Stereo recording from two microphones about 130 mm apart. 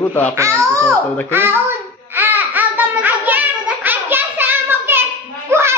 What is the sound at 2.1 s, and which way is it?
Laughter, 15° right (ahead or behind).